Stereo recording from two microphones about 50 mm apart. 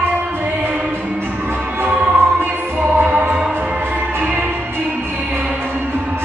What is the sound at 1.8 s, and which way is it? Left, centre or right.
Music, right.